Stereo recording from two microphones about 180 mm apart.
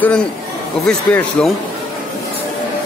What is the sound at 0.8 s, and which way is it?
Speech, 5° left (ahead or behind).